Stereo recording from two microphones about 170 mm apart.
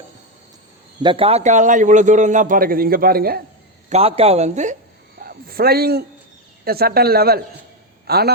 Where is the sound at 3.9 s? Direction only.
35° right (ahead or behind).